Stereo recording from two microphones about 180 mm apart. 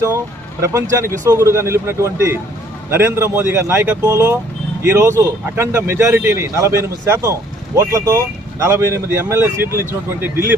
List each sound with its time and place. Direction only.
0.6 s speech: 15° right (ahead or behind)